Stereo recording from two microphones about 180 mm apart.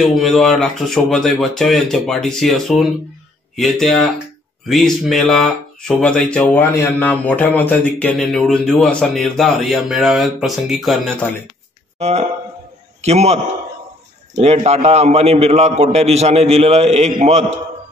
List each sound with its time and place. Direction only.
0.0 s speech: centre (ahead or behind)
12.0 s a man's voice: 35° right (ahead or behind)
14.4 s a man's voice: 35° right (ahead or behind)